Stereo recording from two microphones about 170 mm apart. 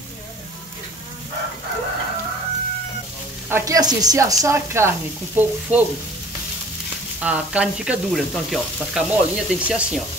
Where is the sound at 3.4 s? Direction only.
15° right (ahead or behind).